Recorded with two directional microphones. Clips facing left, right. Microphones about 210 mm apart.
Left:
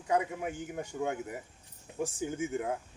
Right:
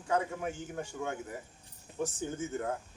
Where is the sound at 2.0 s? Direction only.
10° left (ahead or behind).